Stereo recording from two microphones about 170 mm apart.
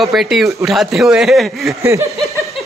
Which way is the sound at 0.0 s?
Centre (ahead or behind).